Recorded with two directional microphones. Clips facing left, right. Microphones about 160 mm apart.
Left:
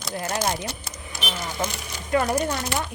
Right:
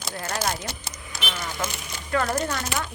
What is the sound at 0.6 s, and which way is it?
Speech, 30° left (ahead or behind).